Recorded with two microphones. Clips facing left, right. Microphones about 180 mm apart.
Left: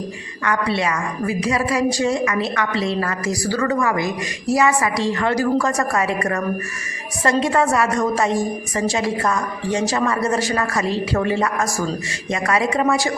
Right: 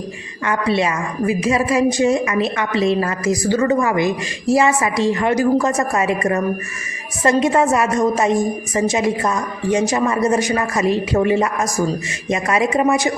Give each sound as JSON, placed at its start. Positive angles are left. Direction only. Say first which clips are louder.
{"t": 0.4, "sound": "a woman's voice", "louder": "right 3 dB", "side_deg": -20}